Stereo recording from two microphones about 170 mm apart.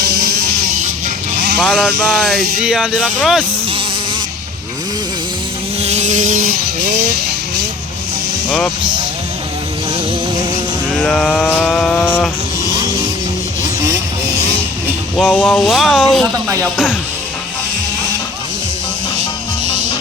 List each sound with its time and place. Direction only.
0.1 s music: 65° right (ahead or behind)
1.5 s speech: centre (ahead or behind)
5.8 s vehicle: 40° right (ahead or behind)
8.4 s speech: 5° left (ahead or behind)
8.8 s speech: 25° right (ahead or behind)
10.9 s vehicle: 5° left (ahead or behind)
15.3 s speech: 10° left (ahead or behind)